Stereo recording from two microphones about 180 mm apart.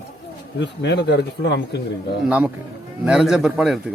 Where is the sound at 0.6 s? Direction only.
75° left (ahead or behind).